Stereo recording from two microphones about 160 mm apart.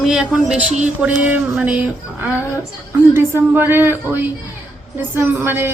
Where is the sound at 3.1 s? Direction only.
15° right (ahead or behind).